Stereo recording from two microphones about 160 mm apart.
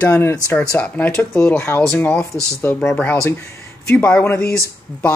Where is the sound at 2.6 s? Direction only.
15° left (ahead or behind).